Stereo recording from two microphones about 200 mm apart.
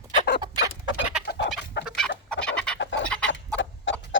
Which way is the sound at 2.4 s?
5° left (ahead or behind).